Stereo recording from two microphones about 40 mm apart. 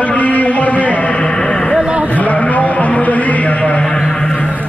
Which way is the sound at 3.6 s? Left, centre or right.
Centre.